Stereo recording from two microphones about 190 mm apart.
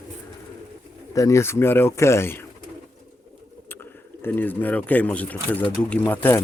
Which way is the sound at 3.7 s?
10° left (ahead or behind).